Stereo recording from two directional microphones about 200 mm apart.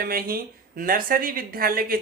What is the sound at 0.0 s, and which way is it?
Speech, 45° right (ahead or behind).